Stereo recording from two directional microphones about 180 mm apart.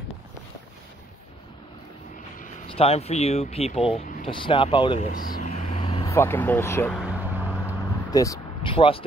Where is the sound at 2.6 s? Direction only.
35° left (ahead or behind).